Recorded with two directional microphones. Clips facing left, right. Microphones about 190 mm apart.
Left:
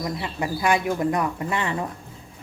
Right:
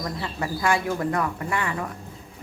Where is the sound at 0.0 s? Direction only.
15° left (ahead or behind).